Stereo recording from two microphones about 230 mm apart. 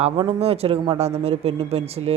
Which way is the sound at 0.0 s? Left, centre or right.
Right.